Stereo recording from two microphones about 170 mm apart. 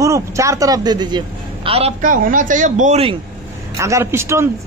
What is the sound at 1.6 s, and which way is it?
Speech, 35° right (ahead or behind).